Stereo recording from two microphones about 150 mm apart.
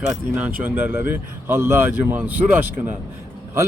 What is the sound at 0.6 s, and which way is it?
A man's voice, 15° right (ahead or behind).